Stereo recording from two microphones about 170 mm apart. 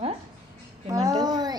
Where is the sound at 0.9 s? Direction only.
20° right (ahead or behind).